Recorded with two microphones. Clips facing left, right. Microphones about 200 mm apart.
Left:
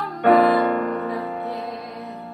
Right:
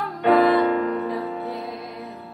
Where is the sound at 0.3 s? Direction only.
Centre (ahead or behind).